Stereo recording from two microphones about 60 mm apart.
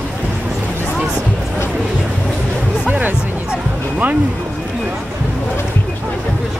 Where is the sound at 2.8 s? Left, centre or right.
Right.